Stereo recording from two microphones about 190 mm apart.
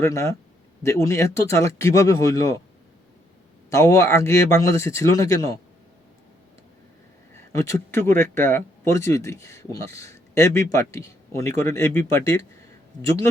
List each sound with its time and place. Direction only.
0.0 s speech: 15° left (ahead or behind)
3.7 s speech: 15° left (ahead or behind)
7.3 s speech: 15° left (ahead or behind)